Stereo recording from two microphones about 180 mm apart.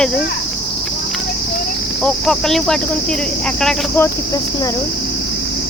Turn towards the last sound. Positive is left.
turn(degrees=20)  # may be behind; listen again after turning